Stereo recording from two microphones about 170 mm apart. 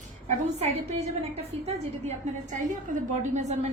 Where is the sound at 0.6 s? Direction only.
35° right (ahead or behind).